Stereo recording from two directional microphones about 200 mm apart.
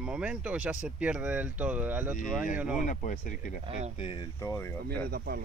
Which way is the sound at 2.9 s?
40° left (ahead or behind).